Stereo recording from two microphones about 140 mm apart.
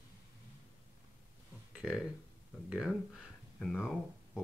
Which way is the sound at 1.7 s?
5° right (ahead or behind).